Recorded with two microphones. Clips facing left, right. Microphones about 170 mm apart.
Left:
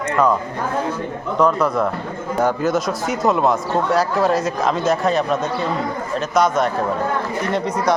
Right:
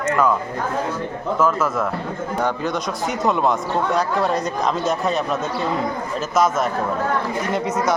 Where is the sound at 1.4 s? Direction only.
Centre (ahead or behind).